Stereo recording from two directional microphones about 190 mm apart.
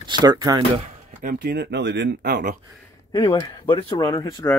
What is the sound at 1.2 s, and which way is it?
Speech, 55° right (ahead or behind).